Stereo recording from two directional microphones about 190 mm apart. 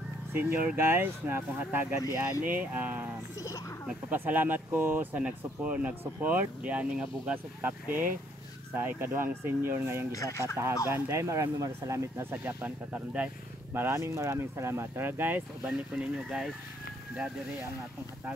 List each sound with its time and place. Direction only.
0.3 s speech: 10° right (ahead or behind)
3.3 s a sound: 15° left (ahead or behind)
3.8 s speech: 10° right (ahead or behind)
10.1 s speech: 15° left (ahead or behind)
10.9 s speech: 15° right (ahead or behind)